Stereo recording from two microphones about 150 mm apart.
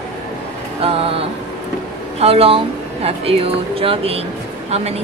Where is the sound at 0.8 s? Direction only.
40° right (ahead or behind).